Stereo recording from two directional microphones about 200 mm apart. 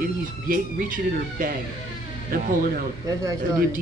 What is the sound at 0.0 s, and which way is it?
Speech, 45° right (ahead or behind).